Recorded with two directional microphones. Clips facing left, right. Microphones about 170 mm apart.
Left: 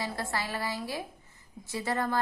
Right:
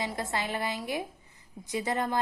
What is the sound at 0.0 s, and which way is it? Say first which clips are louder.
A woman's voice: right 1 dB; 20° right (ahead or behind).